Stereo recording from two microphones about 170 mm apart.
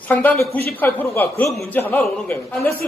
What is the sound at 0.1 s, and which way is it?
A man's voice, 10° left (ahead or behind).